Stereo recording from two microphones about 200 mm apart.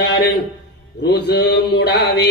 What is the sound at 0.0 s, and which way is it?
Speech, 55° left (ahead or behind).